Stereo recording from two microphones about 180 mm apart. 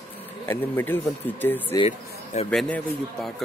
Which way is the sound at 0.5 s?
10° left (ahead or behind).